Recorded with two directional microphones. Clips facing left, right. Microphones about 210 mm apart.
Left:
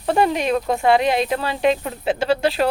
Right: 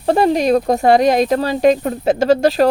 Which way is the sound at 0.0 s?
35° right (ahead or behind).